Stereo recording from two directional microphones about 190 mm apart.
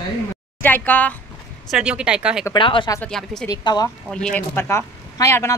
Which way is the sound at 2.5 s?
25° left (ahead or behind).